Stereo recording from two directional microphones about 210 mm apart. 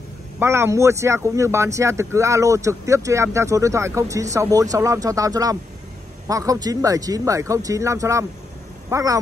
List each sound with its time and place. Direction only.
0.4 s speech: 10° right (ahead or behind)